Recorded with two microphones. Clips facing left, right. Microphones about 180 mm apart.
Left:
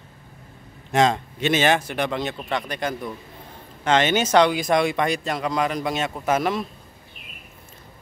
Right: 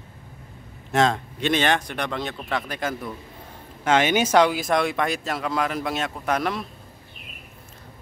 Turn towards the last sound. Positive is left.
turn(degrees=0)  # may be behind; listen again after turning